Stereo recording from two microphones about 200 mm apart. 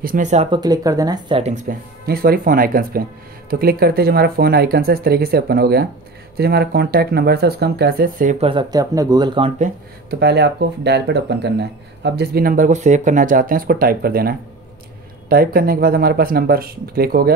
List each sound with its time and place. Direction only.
0.0 s speech: 40° right (ahead or behind)
0.5 s speech: 20° right (ahead or behind)
1.4 s speech: 40° right (ahead or behind)
8.5 s speech: 20° right (ahead or behind)
10.0 s speech: 55° right (ahead or behind)